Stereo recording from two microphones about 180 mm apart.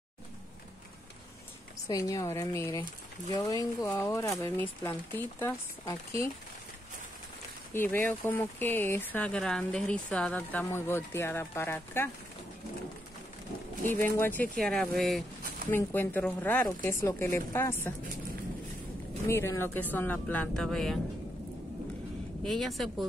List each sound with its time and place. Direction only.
1.9 s speech: 20° left (ahead or behind)
7.7 s speech: 10° left (ahead or behind)
13.8 s speech: 10° left (ahead or behind)
15.7 s speech: 10° left (ahead or behind)
19.2 s speech: 15° left (ahead or behind)
22.4 s speech: centre (ahead or behind)